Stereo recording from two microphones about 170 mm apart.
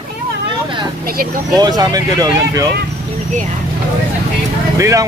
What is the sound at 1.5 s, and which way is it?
Speech, 25° right (ahead or behind).